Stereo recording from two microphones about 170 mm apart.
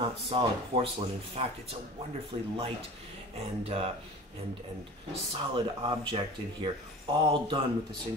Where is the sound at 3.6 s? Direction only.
35° right (ahead or behind).